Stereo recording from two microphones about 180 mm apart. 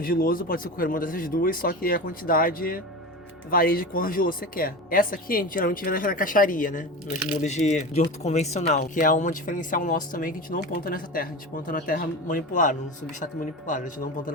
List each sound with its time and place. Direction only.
0.0 s speech: 55° left (ahead or behind)